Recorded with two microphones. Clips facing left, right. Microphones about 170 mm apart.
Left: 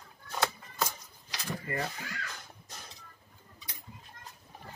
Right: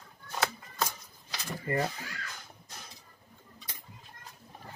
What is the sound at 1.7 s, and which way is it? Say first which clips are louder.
Speech: right 6 dB; 35° right (ahead or behind).